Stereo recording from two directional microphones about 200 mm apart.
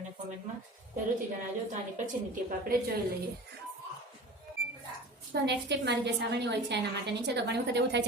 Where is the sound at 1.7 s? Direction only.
40° right (ahead or behind).